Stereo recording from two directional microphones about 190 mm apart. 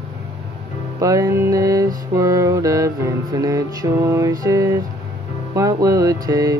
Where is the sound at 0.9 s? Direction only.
15° right (ahead or behind).